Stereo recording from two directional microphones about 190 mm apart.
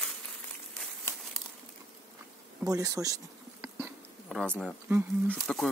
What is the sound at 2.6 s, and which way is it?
Speech, 20° right (ahead or behind).